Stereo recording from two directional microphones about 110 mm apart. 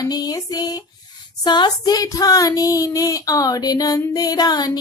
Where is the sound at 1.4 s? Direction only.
40° left (ahead or behind).